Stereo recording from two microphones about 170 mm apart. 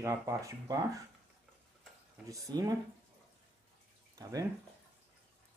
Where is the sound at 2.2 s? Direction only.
20° right (ahead or behind).